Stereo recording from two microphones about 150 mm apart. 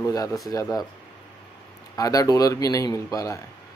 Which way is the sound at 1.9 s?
25° left (ahead or behind).